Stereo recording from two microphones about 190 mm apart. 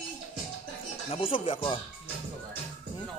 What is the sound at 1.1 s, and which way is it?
Speech, 30° left (ahead or behind).